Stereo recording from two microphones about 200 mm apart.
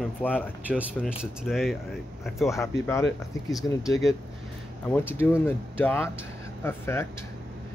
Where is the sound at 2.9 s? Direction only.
15° left (ahead or behind).